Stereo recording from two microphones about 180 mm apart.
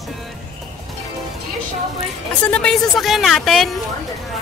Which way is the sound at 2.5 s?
5° left (ahead or behind).